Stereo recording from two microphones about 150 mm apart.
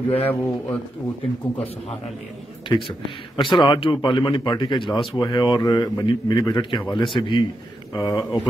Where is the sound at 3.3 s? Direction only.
30° left (ahead or behind).